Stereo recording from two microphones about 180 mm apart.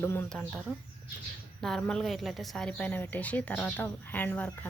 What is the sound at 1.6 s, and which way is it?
A woman's voice, 5° left (ahead or behind).